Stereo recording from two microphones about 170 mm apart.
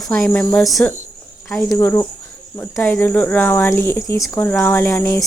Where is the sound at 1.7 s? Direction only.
15° left (ahead or behind).